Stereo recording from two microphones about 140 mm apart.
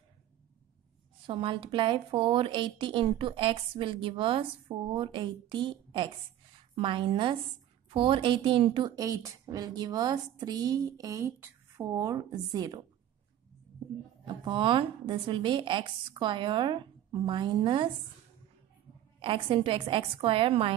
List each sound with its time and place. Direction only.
1.2 s a woman's voice: 40° right (ahead or behind)
14.2 s a woman's voice: 35° right (ahead or behind)
19.1 s a woman's voice: 40° right (ahead or behind)